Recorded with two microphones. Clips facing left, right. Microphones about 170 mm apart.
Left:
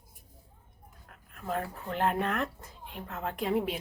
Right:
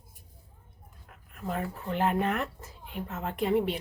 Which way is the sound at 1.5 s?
Centre (ahead or behind).